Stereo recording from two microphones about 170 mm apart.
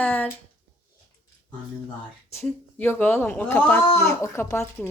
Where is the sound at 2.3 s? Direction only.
15° left (ahead or behind).